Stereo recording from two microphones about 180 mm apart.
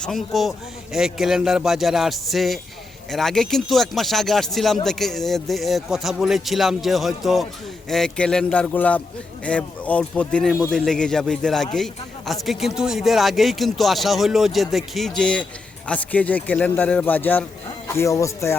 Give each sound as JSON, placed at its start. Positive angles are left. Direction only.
{"t": 0.0, "sound": "a man's voice", "side_deg": 0}